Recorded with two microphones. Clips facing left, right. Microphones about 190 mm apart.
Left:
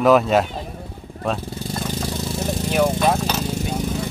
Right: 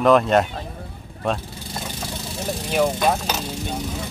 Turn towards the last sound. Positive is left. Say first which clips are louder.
# left 2 dB
turn(degrees=0)  # may be behind; listen again after turning